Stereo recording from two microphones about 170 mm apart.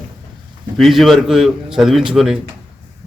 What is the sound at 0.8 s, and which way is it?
Speech, centre (ahead or behind).